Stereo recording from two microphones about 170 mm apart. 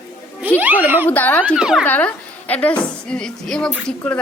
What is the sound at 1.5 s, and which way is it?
Speech, 5° right (ahead or behind).